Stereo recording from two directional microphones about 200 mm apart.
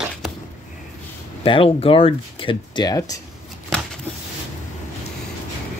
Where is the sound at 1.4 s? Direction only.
25° left (ahead or behind).